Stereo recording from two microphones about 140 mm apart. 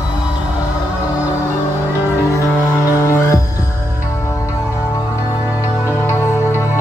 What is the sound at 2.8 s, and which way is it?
Music, 20° left (ahead or behind).